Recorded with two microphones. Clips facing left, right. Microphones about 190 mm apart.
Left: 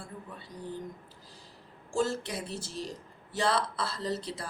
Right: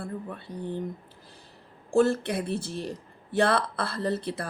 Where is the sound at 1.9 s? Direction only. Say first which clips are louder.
Right 8 dB; 60° right (ahead or behind).